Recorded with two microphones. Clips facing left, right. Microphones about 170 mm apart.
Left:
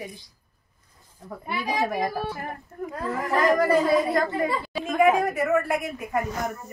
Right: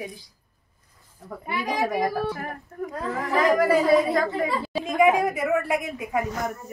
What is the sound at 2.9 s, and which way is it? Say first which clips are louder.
A woman's voice: left 1 dB; centre (ahead or behind).